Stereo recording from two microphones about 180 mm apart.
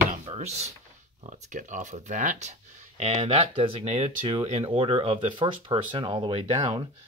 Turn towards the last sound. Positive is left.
turn(degrees=-30)  # may be behind; listen again after turning